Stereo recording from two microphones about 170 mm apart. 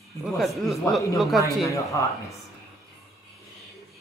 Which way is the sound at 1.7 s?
20° left (ahead or behind).